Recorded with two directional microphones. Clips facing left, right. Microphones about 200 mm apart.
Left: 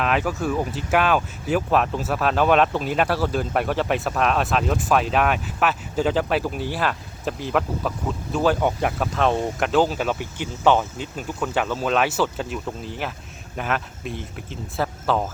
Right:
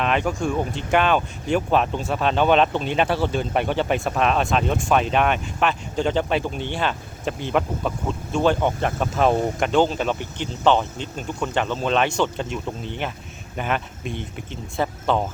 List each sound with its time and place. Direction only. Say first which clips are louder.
0.0 s speech: right 1 dB; 5° left (ahead or behind)